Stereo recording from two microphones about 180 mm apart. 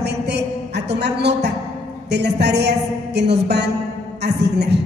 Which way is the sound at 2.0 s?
70° right (ahead or behind).